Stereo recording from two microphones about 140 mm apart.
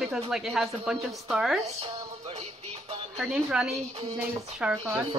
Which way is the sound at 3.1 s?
5° right (ahead or behind).